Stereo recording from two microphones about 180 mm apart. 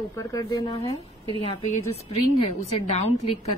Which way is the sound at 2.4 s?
35° left (ahead or behind).